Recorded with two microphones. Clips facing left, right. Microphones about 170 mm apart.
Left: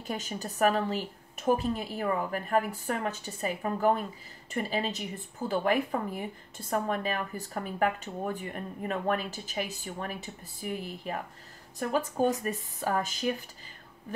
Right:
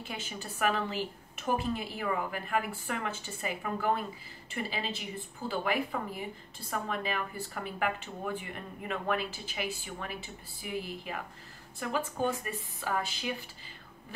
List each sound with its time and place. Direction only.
0.0 s a woman's voice: 40° left (ahead or behind)